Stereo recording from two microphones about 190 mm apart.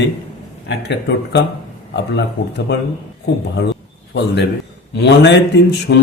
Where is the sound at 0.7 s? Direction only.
65° left (ahead or behind).